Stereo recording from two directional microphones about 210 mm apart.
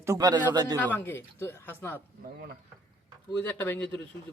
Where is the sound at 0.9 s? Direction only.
10° left (ahead or behind).